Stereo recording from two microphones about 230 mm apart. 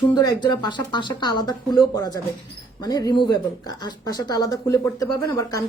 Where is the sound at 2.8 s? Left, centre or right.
Centre.